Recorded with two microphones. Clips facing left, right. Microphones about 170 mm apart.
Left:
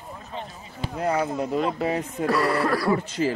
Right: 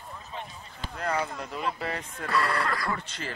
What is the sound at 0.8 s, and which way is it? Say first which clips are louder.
Speech: left 6 dB; 10° left (ahead or behind).